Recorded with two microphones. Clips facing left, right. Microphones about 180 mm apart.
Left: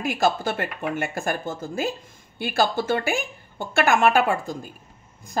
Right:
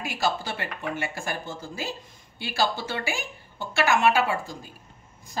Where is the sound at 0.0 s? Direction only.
50° left (ahead or behind).